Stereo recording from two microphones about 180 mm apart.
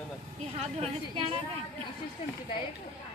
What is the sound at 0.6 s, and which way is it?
Speech, 35° right (ahead or behind).